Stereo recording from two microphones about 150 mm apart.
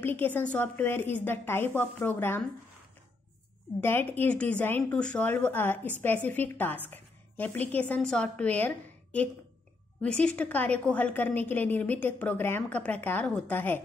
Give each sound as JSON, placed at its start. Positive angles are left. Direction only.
{"t": 0.0, "sound": "a woman's voice", "side_deg": 10}
{"t": 3.8, "sound": "a woman's voice", "side_deg": 15}